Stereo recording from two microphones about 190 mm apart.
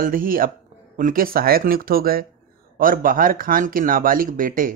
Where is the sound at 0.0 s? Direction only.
50° right (ahead or behind).